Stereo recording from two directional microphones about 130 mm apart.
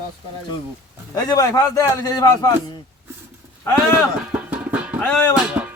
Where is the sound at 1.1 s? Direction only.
30° left (ahead or behind).